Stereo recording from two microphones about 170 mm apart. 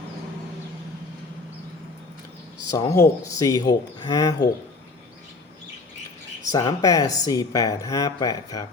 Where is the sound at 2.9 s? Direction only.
20° left (ahead or behind).